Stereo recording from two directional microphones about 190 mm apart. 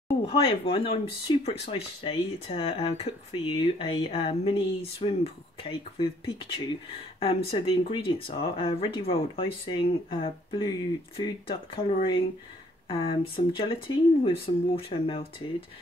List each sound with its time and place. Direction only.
0.2 s speech: 30° left (ahead or behind)